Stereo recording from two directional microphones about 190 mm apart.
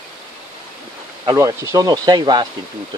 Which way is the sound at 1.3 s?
15° right (ahead or behind).